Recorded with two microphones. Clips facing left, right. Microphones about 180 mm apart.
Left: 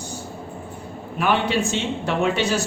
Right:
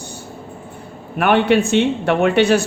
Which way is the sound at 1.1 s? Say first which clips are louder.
Right 7 dB; 60° right (ahead or behind).